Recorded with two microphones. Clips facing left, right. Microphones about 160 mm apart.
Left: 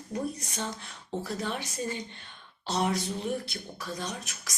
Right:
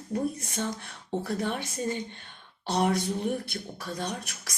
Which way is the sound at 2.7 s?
55° right (ahead or behind).